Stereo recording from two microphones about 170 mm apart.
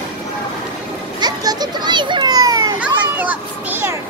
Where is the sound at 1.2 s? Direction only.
25° right (ahead or behind).